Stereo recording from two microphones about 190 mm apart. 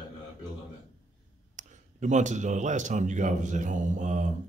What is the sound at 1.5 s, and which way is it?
Speech, 40° right (ahead or behind).